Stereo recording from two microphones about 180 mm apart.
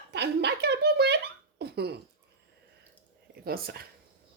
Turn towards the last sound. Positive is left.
turn(degrees=-55)  # may be behind; listen again after turning